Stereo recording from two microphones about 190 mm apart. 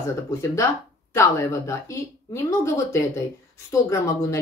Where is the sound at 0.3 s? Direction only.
15° left (ahead or behind).